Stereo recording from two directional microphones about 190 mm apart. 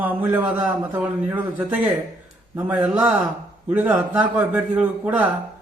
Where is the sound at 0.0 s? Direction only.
10° right (ahead or behind).